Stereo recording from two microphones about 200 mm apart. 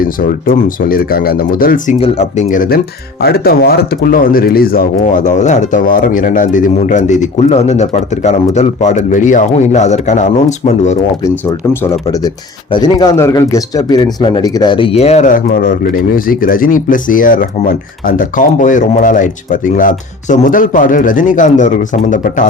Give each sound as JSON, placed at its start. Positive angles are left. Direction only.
{"t": 0.0, "sound": "speech", "side_deg": 45}
{"t": 2.0, "sound": "speech", "side_deg": 35}
{"t": 12.7, "sound": "speech", "side_deg": 20}